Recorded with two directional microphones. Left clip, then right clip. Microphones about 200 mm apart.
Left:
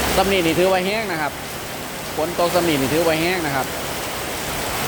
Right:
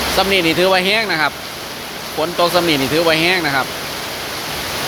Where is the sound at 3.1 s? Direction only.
5° right (ahead or behind).